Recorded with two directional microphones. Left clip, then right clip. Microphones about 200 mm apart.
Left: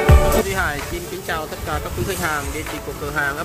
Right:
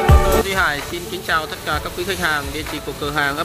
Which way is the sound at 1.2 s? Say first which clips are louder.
Right 6 dB; centre (ahead or behind).